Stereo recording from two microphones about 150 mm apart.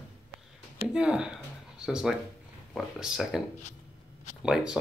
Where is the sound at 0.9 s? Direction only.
5° right (ahead or behind).